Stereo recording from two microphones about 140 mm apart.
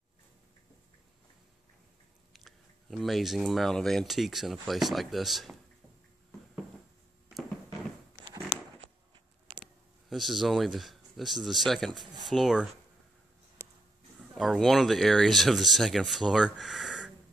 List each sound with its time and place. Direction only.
2.3 s speech: centre (ahead or behind)
8.3 s a sound: 35° right (ahead or behind)
10.0 s speech: centre (ahead or behind)
14.3 s speech: centre (ahead or behind)